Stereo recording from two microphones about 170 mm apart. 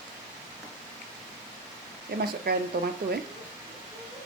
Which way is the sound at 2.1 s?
65° right (ahead or behind).